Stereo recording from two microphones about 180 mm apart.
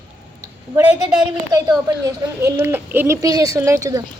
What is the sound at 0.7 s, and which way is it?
A woman's voice, 15° right (ahead or behind).